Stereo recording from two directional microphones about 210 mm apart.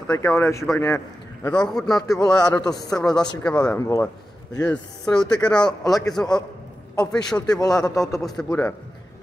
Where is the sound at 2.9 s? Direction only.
5° left (ahead or behind).